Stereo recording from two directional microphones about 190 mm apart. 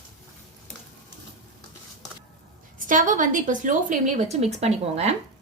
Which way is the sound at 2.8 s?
45° right (ahead or behind).